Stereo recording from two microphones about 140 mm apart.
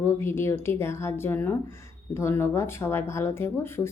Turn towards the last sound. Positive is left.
turn(degrees=15)  # may be behind; listen again after turning